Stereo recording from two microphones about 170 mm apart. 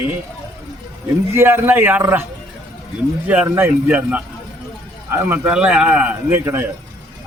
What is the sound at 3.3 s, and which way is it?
Speech, 10° right (ahead or behind).